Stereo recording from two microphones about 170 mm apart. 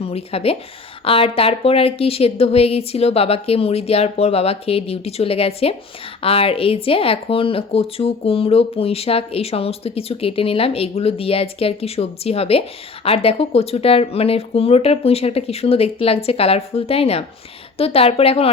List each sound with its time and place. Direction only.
0.0 s a woman's voice: 35° left (ahead or behind)